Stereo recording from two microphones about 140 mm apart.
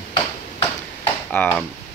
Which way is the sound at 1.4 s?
15° left (ahead or behind).